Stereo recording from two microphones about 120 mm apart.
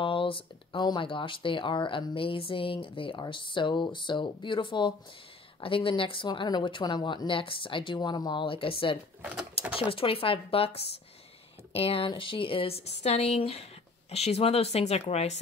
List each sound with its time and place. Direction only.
0.0 s speech: 45° left (ahead or behind)
9.2 s sewing machine: 10° right (ahead or behind)
9.8 s speech: 50° left (ahead or behind)